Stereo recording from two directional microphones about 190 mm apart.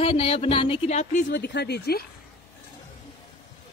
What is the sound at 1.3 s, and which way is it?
Speech, 60° left (ahead or behind).